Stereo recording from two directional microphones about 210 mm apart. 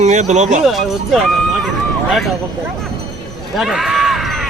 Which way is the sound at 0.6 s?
Centre (ahead or behind).